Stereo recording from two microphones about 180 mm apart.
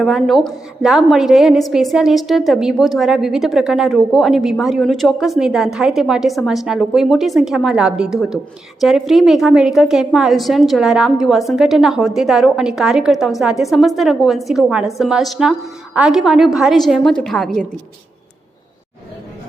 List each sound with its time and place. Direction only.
0.0 s a woman's voice: centre (ahead or behind)